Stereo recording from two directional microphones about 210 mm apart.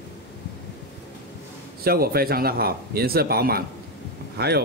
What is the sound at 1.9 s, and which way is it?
Speech, 45° right (ahead or behind).